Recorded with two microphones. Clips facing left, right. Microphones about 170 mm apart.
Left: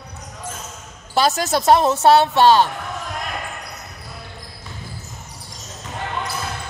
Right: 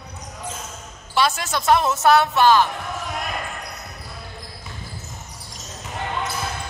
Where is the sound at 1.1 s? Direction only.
40° left (ahead or behind).